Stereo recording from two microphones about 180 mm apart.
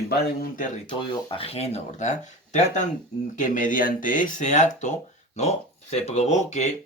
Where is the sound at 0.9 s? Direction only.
30° left (ahead or behind).